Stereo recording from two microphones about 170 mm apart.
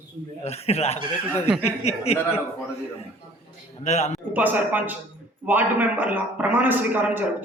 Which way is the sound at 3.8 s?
40° left (ahead or behind).